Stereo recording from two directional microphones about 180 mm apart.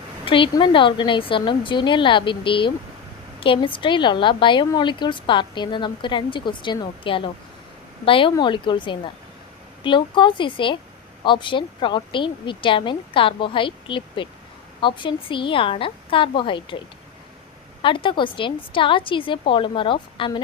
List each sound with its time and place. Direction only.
0.3 s a woman's voice: 30° left (ahead or behind)
17.8 s a woman's voice: 30° left (ahead or behind)